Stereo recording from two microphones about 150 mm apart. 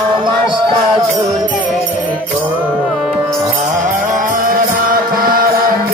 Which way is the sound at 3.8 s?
60° right (ahead or behind).